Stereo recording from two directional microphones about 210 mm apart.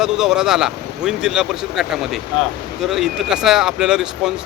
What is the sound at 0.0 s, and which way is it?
Speech, 5° right (ahead or behind).